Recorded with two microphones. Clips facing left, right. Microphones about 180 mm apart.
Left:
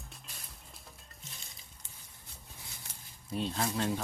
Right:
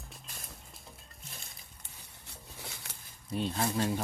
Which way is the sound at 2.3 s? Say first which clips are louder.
Right 6 dB; 70° right (ahead or behind).